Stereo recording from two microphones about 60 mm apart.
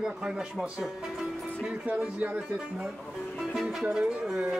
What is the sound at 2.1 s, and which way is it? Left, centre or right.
Speech, right.